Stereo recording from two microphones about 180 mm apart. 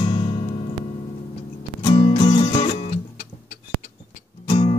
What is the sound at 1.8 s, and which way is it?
Music, 25° left (ahead or behind).